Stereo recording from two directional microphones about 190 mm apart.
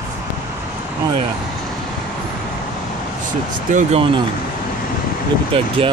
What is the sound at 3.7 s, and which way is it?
Speech, 35° right (ahead or behind).